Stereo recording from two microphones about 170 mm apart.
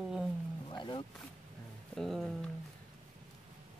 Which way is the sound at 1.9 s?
Centre (ahead or behind).